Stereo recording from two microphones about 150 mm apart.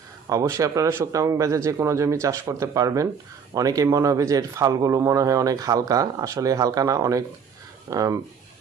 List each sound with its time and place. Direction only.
0.3 s speech: 20° right (ahead or behind)